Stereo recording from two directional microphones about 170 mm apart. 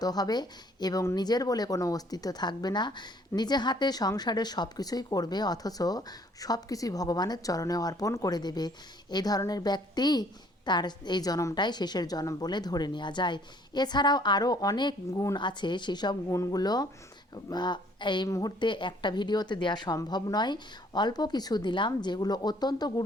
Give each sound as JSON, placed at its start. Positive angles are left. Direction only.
{"t": 0.0, "sound": "speech", "side_deg": 25}